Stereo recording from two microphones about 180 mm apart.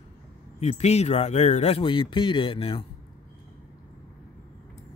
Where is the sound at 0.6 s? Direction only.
35° left (ahead or behind).